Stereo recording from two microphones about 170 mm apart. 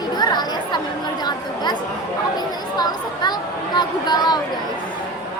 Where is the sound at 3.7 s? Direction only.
25° left (ahead or behind).